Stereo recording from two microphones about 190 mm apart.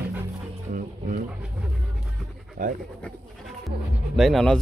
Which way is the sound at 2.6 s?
45° right (ahead or behind).